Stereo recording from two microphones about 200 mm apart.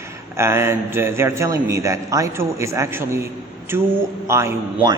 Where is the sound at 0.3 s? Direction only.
15° right (ahead or behind).